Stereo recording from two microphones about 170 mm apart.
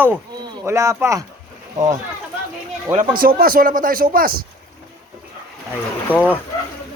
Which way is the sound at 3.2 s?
60° right (ahead or behind).